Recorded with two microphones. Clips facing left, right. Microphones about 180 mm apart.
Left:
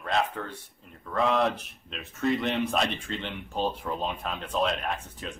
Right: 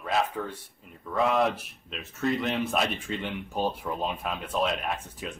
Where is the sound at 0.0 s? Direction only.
10° right (ahead or behind).